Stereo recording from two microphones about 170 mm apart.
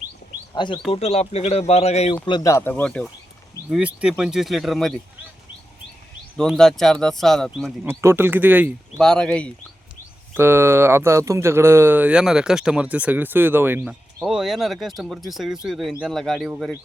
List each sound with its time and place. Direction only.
0.5 s speech: 25° left (ahead or behind)
2.2 s speech: 25° left (ahead or behind); by 3.1 s 5° left (ahead or behind)
3.7 s speech: 5° right (ahead or behind)
6.3 s speech: 5° left (ahead or behind)
7.9 s speech: 15° right (ahead or behind)
9.0 s speech: 5° left (ahead or behind)
10.3 s speech: 15° right (ahead or behind)